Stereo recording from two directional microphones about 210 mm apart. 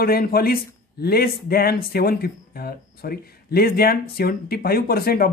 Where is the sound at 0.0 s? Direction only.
45° left (ahead or behind).